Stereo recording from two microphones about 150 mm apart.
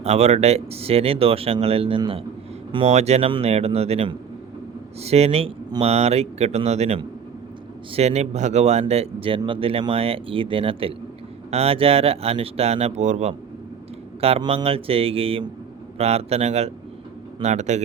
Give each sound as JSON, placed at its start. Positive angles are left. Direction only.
{"t": 0.0, "sound": "speech", "side_deg": -45}